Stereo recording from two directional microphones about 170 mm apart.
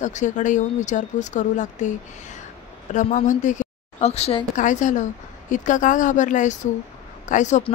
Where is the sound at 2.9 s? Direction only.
50° left (ahead or behind).